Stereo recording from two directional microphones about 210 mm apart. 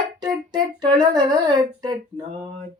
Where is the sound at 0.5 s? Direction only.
20° right (ahead or behind).